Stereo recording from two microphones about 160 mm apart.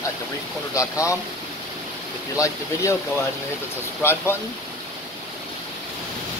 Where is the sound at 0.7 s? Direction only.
20° left (ahead or behind).